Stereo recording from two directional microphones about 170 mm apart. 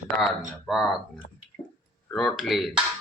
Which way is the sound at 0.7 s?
Centre (ahead or behind).